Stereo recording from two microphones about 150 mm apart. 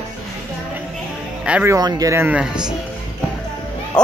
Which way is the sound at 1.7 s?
25° right (ahead or behind).